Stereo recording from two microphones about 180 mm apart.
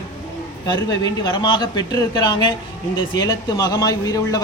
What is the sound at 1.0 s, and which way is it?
A woman's voice, 25° left (ahead or behind).